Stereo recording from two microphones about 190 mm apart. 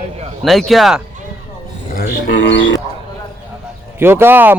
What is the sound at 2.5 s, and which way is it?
Speech, 70° left (ahead or behind).